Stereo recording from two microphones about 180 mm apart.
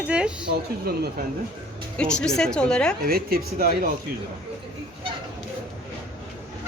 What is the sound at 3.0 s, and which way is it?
Speech, 55° right (ahead or behind).